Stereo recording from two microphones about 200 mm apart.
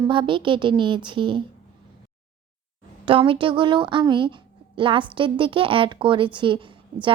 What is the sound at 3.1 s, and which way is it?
A woman's voice, 25° right (ahead or behind).